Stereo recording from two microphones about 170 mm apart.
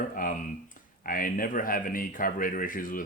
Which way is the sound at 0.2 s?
55° left (ahead or behind).